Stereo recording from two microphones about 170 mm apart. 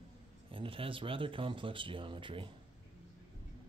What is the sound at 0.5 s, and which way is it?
Speech, 30° right (ahead or behind).